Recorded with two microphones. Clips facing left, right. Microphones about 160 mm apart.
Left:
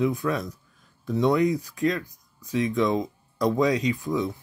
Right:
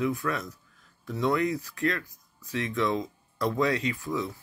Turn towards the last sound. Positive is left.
turn(degrees=20)  # may be behind; listen again after turning